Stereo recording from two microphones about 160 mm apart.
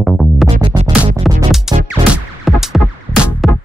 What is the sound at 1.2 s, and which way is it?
Music, centre (ahead or behind).